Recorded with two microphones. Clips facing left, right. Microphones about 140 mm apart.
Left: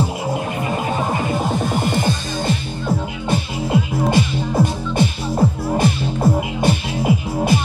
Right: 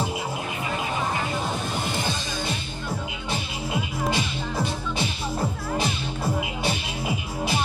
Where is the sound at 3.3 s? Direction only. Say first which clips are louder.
Left 10 dB; 50° left (ahead or behind).